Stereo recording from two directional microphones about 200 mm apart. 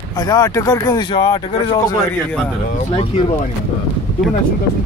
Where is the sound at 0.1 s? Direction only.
20° left (ahead or behind).